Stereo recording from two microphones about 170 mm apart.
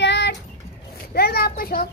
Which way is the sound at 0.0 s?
90° left.